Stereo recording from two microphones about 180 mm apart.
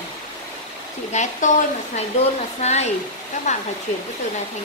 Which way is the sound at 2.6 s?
40° left (ahead or behind).